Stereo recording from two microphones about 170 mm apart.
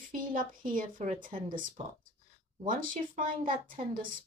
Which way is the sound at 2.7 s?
55° right (ahead or behind).